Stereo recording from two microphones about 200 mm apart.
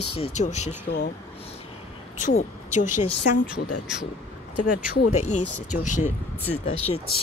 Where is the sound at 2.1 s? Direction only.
35° left (ahead or behind).